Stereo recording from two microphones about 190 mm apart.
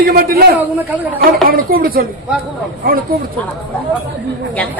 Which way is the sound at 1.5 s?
50° right (ahead or behind).